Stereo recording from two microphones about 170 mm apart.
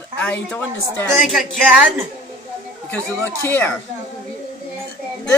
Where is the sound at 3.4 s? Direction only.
10° left (ahead or behind).